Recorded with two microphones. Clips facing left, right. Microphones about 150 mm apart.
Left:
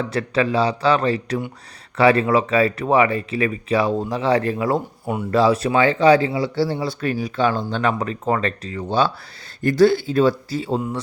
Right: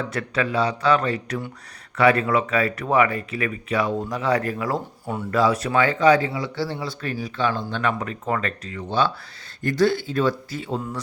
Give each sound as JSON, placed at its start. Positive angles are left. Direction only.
{"t": 0.1, "sound": "speech", "side_deg": 30}